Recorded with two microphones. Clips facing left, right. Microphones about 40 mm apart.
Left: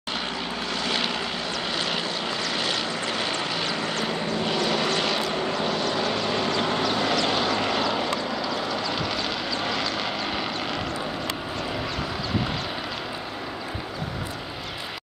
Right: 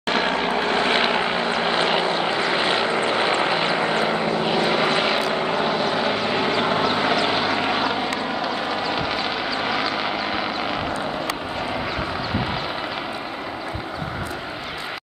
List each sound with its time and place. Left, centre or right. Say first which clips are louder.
0.1 s vehicle: right 9 dB; right; by 10.8 s centre